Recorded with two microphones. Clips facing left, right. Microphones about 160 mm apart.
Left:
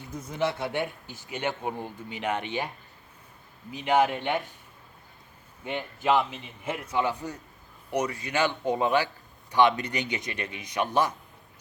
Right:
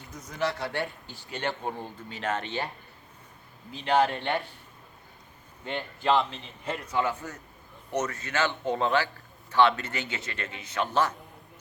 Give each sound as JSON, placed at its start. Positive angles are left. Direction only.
{"t": 0.2, "sound": "speech", "side_deg": 25}
{"t": 5.6, "sound": "speech", "side_deg": 15}